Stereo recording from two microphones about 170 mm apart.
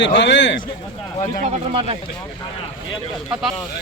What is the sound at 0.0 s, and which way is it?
Speech, 90° left.